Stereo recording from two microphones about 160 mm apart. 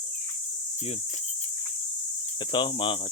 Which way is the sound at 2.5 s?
30° left (ahead or behind).